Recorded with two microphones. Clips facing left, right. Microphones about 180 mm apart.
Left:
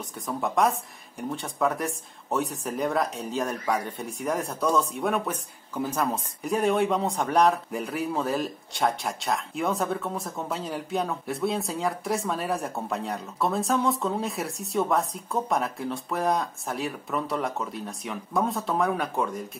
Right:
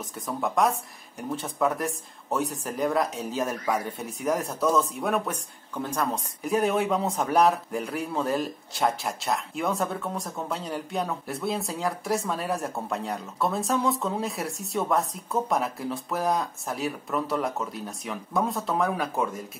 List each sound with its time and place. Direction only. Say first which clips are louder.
0.0 s speech: even; centre (ahead or behind)